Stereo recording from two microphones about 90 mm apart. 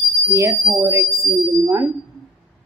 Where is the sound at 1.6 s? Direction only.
30° right (ahead or behind).